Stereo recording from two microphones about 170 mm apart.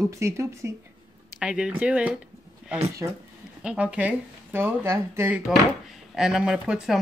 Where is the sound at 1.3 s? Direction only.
5° right (ahead or behind).